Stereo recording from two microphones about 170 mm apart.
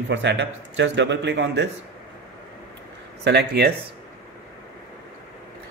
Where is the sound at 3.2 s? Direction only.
75° right (ahead or behind).